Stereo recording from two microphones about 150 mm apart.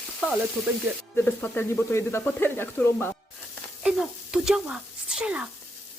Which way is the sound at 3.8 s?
5° right (ahead or behind).